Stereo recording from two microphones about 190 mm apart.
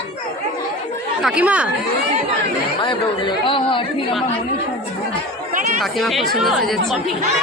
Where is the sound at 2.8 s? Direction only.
25° left (ahead or behind).